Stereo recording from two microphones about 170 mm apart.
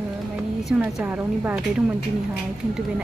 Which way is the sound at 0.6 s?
10° right (ahead or behind).